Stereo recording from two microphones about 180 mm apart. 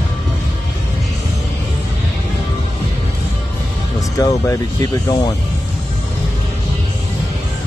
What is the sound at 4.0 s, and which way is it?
Speech, 20° left (ahead or behind).